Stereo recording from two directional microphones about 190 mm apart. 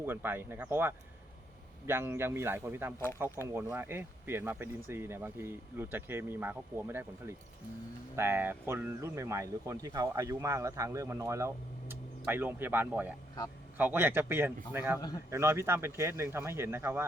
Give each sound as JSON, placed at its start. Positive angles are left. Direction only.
{"t": 0.0, "sound": "speech", "side_deg": -10}